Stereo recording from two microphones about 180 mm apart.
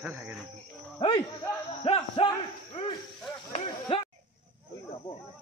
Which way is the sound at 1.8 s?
30° left (ahead or behind).